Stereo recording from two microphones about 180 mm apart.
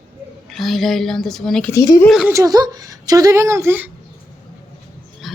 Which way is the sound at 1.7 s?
20° left (ahead or behind).